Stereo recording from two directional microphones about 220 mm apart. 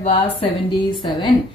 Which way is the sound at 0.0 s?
25° left (ahead or behind).